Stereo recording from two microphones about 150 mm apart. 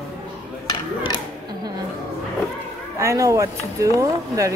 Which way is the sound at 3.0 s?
20° right (ahead or behind).